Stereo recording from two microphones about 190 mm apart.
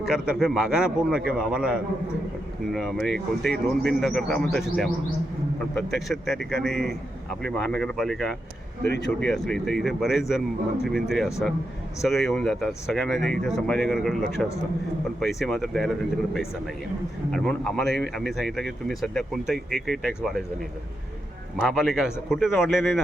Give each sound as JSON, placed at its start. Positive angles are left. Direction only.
{"t": 0.1, "sound": "speech", "side_deg": 0}
{"t": 8.9, "sound": "speech", "side_deg": 65}
{"t": 9.5, "sound": "speech", "side_deg": 0}
{"t": 21.6, "sound": "speech", "side_deg": 0}